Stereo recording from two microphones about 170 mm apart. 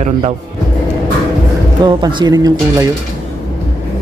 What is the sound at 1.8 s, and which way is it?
Speech, 25° right (ahead or behind).